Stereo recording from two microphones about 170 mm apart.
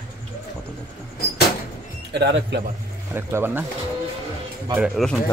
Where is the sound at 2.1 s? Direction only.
90° right.